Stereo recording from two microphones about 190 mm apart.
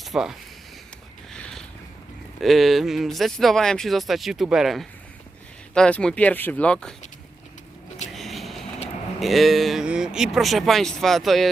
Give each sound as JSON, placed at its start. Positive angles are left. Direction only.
{"t": 0.0, "sound": "speech", "side_deg": 0}
{"t": 1.3, "sound": "boat", "side_deg": 5}
{"t": 2.4, "sound": "speech", "side_deg": 0}
{"t": 8.1, "sound": "a sound", "side_deg": 0}
{"t": 9.2, "sound": "speech", "side_deg": 0}